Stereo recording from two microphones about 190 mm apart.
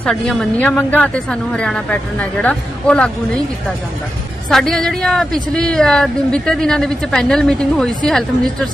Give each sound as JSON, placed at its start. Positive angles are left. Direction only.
{"t": 0.0, "sound": "a woman's voice", "side_deg": 0}
{"t": 4.5, "sound": "a woman's voice", "side_deg": 0}